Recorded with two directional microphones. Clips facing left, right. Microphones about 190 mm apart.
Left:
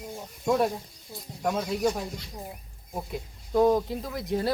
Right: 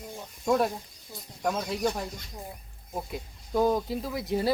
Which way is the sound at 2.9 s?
Centre (ahead or behind).